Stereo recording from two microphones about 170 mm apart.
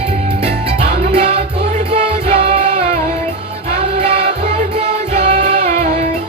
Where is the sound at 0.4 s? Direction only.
35° right (ahead or behind).